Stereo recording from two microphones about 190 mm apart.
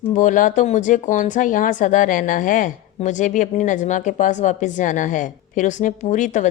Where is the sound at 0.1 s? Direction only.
40° left (ahead or behind).